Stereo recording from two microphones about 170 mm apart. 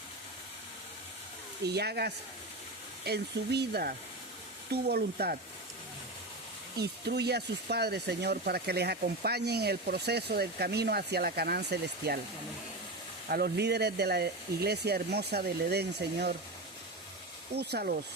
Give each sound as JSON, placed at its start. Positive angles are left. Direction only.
{"t": 1.6, "sound": "speech", "side_deg": -75}
{"t": 6.7, "sound": "speech", "side_deg": -75}
{"t": 13.2, "sound": "speech", "side_deg": -65}
{"t": 17.5, "sound": "speech", "side_deg": -70}